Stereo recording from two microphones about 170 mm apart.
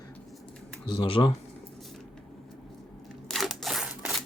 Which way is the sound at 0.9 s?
30° left (ahead or behind).